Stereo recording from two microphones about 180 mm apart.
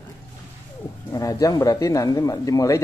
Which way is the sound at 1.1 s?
20° left (ahead or behind).